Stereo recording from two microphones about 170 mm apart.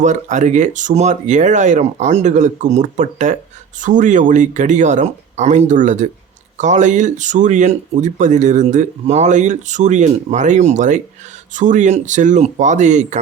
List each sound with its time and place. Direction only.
0.0 s speech: 45° right (ahead or behind)